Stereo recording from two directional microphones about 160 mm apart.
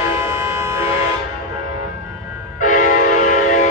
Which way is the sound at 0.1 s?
15° right (ahead or behind).